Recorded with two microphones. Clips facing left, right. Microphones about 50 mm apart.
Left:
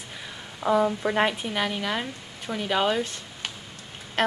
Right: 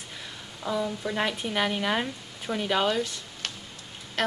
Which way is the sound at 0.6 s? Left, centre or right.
Left.